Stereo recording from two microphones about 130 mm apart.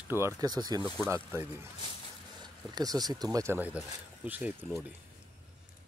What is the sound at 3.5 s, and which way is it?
Speech, 10° right (ahead or behind).